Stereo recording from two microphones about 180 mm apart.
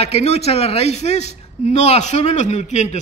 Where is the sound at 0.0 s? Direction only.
35° left (ahead or behind).